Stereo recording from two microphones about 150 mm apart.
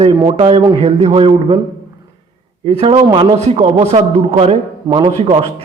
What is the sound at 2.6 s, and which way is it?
Speech, 40° right (ahead or behind).